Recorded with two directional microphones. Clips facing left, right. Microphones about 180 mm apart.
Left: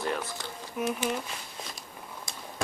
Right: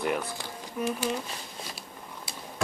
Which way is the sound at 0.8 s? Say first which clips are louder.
Even; 10° left (ahead or behind).